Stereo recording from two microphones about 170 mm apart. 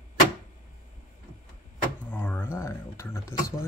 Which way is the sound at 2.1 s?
10° left (ahead or behind).